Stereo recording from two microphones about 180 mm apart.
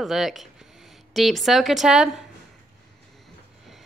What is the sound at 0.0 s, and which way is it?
Speech, centre (ahead or behind).